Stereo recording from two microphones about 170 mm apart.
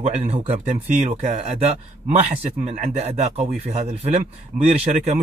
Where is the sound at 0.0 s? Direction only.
40° right (ahead or behind).